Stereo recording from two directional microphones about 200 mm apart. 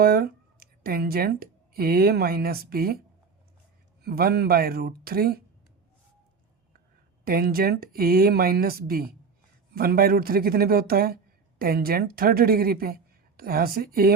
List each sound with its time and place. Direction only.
0.0 s speech: 50° right (ahead or behind)
4.0 s a woman's voice: 50° right (ahead or behind)
7.3 s a woman's voice: 50° right (ahead or behind)